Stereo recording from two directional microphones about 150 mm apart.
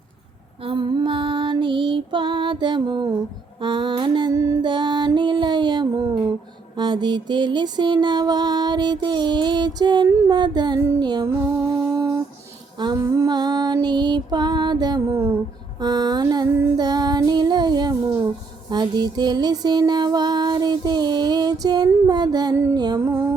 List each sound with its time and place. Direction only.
0.6 s music: 35° right (ahead or behind)
3.6 s mantra: 30° right (ahead or behind)
4.6 s music: 30° right (ahead or behind)
12.8 s female singing: 25° right (ahead or behind)
13.8 s music: 30° right (ahead or behind)
16.7 s child singing: 25° right (ahead or behind)
18.7 s music: 30° right (ahead or behind)